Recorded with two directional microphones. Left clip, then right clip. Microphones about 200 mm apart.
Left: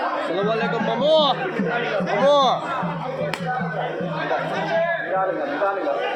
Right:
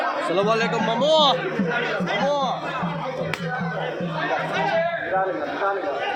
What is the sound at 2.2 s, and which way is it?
Speech, 45° left (ahead or behind).